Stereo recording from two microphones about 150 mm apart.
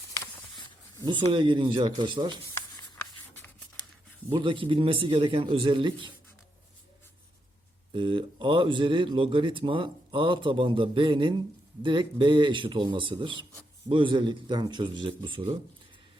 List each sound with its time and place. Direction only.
1.0 s speech: 30° right (ahead or behind)
4.3 s speech: 30° right (ahead or behind)
7.9 s speech: 35° right (ahead or behind)